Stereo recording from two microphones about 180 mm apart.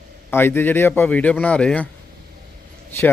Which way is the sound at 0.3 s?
10° left (ahead or behind).